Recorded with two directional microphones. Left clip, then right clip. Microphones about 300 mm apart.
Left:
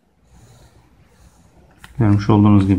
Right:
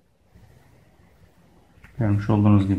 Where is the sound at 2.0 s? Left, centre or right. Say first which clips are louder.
Left 8 dB; centre.